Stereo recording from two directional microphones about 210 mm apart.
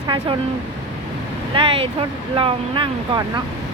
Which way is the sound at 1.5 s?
25° right (ahead or behind).